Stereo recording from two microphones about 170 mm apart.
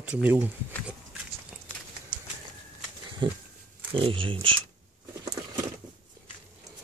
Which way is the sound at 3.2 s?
30° right (ahead or behind).